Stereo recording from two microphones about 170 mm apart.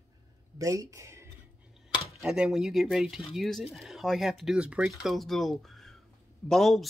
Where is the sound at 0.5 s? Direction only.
20° right (ahead or behind).